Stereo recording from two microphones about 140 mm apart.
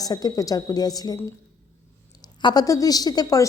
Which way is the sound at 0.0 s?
25° left (ahead or behind).